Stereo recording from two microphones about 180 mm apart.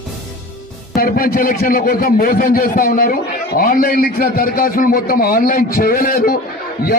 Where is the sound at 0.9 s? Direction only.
50° left (ahead or behind).